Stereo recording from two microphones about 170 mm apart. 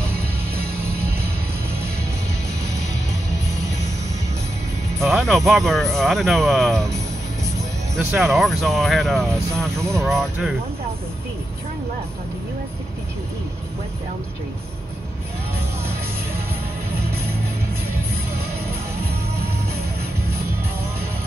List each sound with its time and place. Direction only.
0.1 s music: 65° right (ahead or behind)
5.0 s speech: centre (ahead or behind)
7.9 s speech: centre (ahead or behind)
9.8 s speech: 15° right (ahead or behind)
10.0 s speech: centre (ahead or behind)